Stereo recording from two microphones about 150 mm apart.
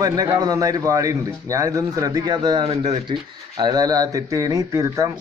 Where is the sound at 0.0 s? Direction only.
25° right (ahead or behind).